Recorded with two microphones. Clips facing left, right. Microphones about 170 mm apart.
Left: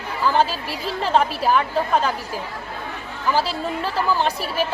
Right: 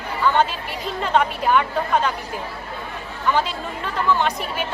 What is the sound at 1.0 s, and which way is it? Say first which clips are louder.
Speech: left 1 dB; 35° left (ahead or behind).